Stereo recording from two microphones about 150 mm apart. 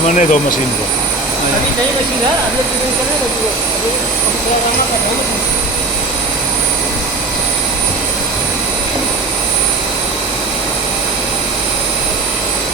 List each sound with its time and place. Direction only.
0.0 s speech: 55° left (ahead or behind)